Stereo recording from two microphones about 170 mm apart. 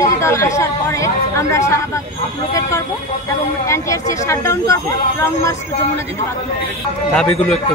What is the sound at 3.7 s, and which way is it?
Speech, 20° left (ahead or behind).